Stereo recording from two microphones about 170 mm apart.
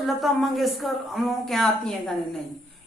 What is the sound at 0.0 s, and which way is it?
Speech, centre (ahead or behind).